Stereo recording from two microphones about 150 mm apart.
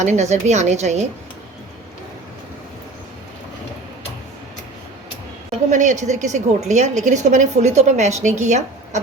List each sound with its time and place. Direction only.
0.0 s a woman's voice: 50° right (ahead or behind)
5.7 s a woman's voice: 55° right (ahead or behind)